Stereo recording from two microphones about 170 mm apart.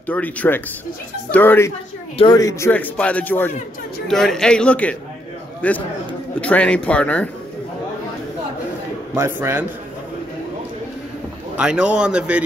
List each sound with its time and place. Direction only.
0.0 s a man's voice: 10° left (ahead or behind)
2.1 s a man's voice: 25° left (ahead or behind); by 7.2 s 5° left (ahead or behind)
9.1 s a man's voice: 15° right (ahead or behind)
11.5 s a man's voice: 5° right (ahead or behind)